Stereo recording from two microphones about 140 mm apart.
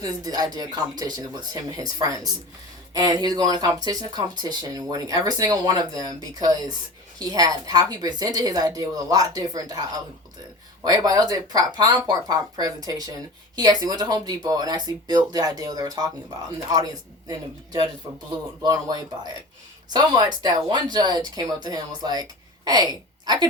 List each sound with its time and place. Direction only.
0.0 s speech: 30° right (ahead or behind)
10.8 s speech: 25° right (ahead or behind)